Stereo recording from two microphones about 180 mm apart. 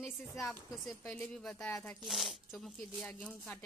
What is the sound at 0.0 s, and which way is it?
Speech, centre (ahead or behind).